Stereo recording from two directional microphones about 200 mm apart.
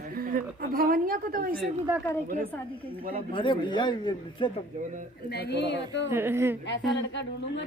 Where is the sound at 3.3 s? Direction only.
25° left (ahead or behind).